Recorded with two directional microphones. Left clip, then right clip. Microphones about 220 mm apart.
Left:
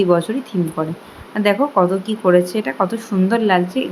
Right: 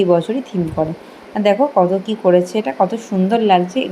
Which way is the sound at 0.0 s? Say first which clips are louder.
Right 1 dB; 10° left (ahead or behind).